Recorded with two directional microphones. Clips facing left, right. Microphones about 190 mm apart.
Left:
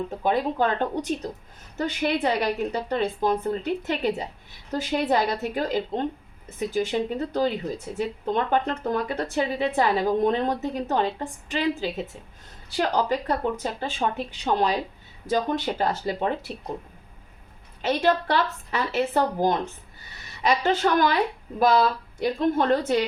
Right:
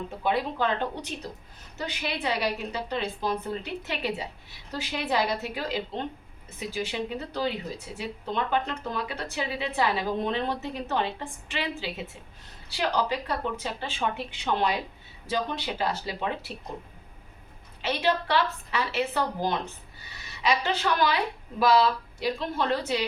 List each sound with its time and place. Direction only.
0.2 s speech: 45° left (ahead or behind)
17.8 s speech: 45° left (ahead or behind)